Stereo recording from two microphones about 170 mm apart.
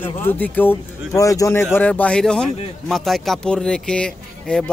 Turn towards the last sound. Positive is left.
turn(degrees=5)  # may be behind; listen again after turning